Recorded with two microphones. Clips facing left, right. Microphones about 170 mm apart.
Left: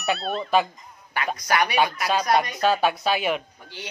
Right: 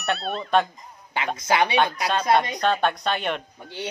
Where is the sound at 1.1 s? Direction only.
25° right (ahead or behind).